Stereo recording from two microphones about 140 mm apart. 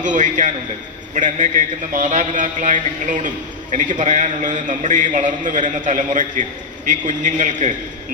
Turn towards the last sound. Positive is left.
turn(degrees=-60)  # may be behind; listen again after turning